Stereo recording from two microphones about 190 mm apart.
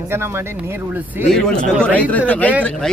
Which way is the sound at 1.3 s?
5° left (ahead or behind).